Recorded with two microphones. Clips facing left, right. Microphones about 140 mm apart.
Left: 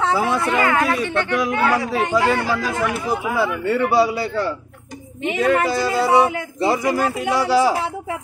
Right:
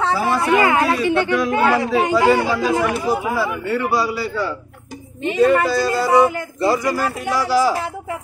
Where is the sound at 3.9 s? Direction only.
25° left (ahead or behind).